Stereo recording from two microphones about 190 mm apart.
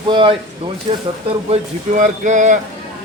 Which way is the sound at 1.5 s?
40° right (ahead or behind).